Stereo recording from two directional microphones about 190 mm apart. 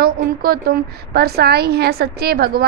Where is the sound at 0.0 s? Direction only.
50° right (ahead or behind).